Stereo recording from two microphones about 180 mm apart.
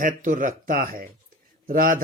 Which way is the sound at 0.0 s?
45° right (ahead or behind).